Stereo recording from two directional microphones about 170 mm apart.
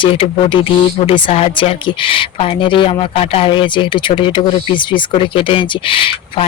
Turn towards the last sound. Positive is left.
turn(degrees=30)  # may be behind; listen again after turning